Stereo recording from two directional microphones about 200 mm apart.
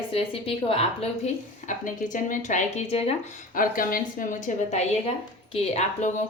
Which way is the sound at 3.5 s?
45° left (ahead or behind).